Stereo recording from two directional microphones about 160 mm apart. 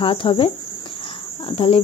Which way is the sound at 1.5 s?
35° left (ahead or behind).